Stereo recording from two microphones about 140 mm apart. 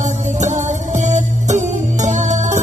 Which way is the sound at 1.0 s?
60° right (ahead or behind).